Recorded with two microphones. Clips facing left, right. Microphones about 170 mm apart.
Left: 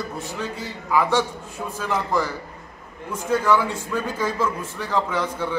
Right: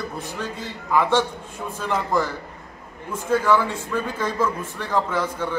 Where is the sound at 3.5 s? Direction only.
10° left (ahead or behind).